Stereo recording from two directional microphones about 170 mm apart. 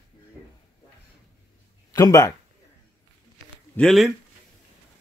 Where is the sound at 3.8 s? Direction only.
Centre (ahead or behind).